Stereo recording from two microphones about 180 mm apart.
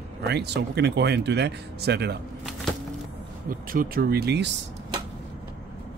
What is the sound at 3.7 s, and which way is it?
Speech, 55° right (ahead or behind).